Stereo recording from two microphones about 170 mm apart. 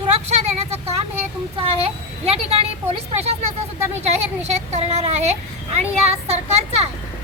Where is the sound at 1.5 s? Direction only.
35° right (ahead or behind).